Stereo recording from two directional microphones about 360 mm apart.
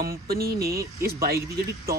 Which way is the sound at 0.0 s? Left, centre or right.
Right.